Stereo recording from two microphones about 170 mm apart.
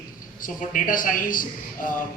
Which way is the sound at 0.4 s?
55° left (ahead or behind).